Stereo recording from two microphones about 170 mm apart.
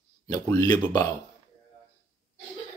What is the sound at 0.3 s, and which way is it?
Speech, 20° left (ahead or behind).